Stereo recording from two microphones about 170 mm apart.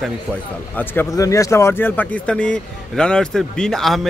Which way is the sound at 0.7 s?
10° left (ahead or behind).